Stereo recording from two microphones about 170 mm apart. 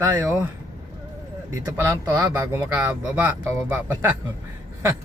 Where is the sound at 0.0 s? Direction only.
10° right (ahead or behind).